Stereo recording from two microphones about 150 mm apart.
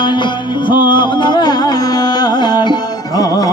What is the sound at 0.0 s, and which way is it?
Music, 30° left (ahead or behind).